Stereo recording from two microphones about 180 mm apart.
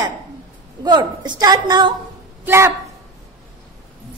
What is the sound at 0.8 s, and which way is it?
A woman's voice, 25° right (ahead or behind).